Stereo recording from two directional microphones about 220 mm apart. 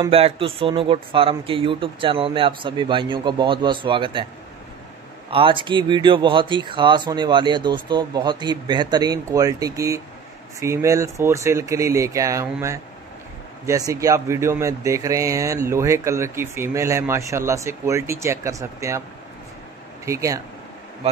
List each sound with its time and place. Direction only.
0.0 s speech: 25° right (ahead or behind)
5.3 s speech: 25° right (ahead or behind)
20.1 s speech: 15° right (ahead or behind)